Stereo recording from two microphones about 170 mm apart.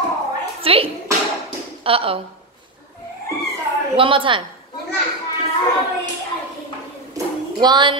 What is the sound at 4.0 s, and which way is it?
Speech, 30° right (ahead or behind).